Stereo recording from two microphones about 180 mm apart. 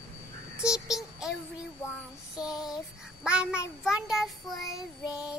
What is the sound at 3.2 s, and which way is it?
Speech, 5° right (ahead or behind).